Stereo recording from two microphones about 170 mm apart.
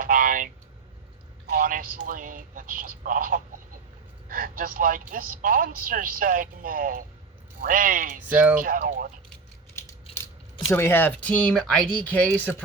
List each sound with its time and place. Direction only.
0.0 s a sound: 55° right (ahead or behind)
1.5 s a man's voice: 55° right (ahead or behind)
8.3 s speech: 10° right (ahead or behind)
8.6 s a man's voice: 55° right (ahead or behind)
10.7 s speech: 15° left (ahead or behind)